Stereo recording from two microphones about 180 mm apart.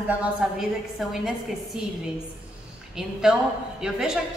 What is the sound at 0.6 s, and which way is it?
Speech, 5° right (ahead or behind).